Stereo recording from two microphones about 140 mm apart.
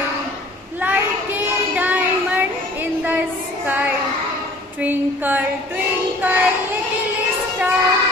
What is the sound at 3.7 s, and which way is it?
Child singing, 10° right (ahead or behind).